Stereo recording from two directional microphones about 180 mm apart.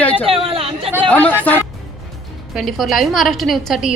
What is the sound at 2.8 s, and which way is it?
A man's voice, centre (ahead or behind).